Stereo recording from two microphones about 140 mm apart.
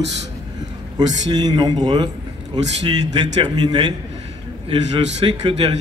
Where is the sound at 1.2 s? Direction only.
30° right (ahead or behind).